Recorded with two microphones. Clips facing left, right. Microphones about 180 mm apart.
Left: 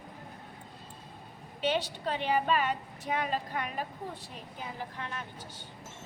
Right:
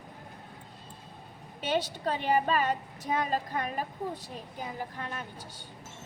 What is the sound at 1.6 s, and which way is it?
A woman's voice, 45° right (ahead or behind).